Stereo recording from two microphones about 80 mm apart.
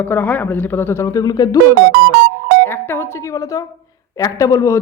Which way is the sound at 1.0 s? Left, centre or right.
Left.